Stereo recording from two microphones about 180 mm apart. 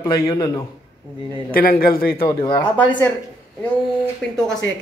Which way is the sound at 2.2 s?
20° left (ahead or behind).